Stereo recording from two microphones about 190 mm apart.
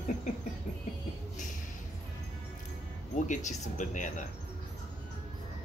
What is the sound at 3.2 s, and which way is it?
Speech, 40° left (ahead or behind).